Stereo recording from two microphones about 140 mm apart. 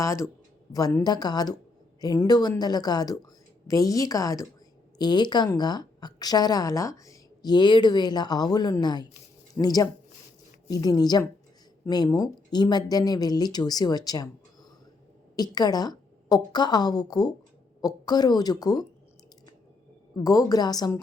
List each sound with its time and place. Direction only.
0.0 s a woman's voice: 20° left (ahead or behind)
20.2 s a woman's voice: 25° left (ahead or behind)